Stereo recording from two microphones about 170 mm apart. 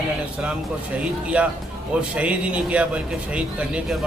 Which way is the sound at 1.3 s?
10° right (ahead or behind).